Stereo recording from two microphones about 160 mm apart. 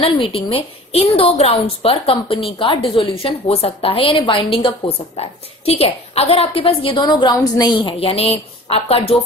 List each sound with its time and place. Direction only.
0.0 s a woman's voice: 35° left (ahead or behind)